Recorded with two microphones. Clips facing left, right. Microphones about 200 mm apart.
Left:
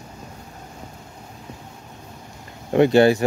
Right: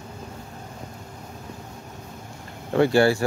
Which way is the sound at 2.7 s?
20° left (ahead or behind).